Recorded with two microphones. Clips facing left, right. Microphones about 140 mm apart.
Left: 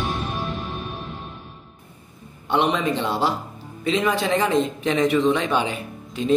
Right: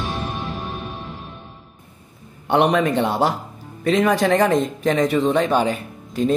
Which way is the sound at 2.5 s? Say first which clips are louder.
Right 4 dB; 55° right (ahead or behind).